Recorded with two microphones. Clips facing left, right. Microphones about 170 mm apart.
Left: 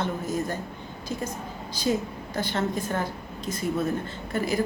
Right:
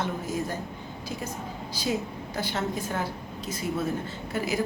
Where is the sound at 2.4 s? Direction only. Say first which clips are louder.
Left 3 dB; 10° right (ahead or behind).